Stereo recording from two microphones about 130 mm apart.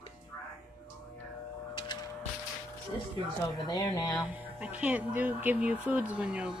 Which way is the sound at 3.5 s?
30° left (ahead or behind).